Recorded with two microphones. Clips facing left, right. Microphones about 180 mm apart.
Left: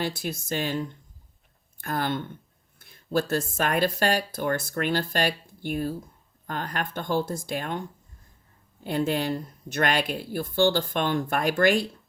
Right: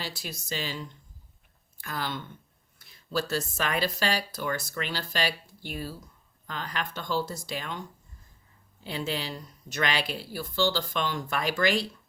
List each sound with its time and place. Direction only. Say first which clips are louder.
0.0 s speech: left 8 dB; 55° left (ahead or behind)